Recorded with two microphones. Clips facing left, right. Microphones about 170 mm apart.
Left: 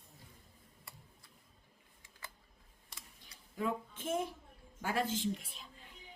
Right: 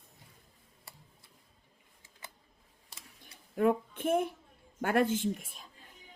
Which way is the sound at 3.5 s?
60° right (ahead or behind).